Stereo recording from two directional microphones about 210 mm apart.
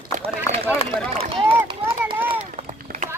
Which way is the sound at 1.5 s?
10° right (ahead or behind).